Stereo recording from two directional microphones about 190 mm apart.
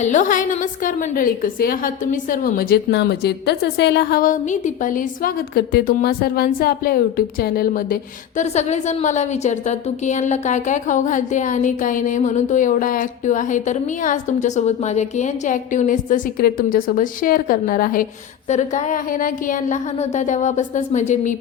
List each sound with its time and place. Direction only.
0.0 s a woman's voice: 40° left (ahead or behind)
8.4 s a woman's voice: 35° left (ahead or behind)